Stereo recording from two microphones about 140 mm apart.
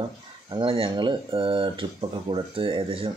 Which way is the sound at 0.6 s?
35° right (ahead or behind).